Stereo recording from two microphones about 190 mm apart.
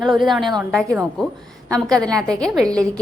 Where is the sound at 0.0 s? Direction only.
Centre (ahead or behind).